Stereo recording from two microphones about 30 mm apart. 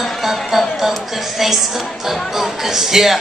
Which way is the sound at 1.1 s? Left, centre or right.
Centre.